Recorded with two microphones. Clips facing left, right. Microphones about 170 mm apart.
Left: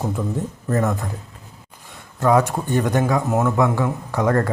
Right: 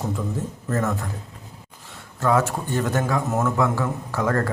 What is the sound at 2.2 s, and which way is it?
Speech, 15° left (ahead or behind).